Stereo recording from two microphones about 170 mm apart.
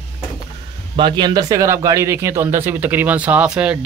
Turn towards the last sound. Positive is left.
turn(degrees=-5)  # may be behind; listen again after turning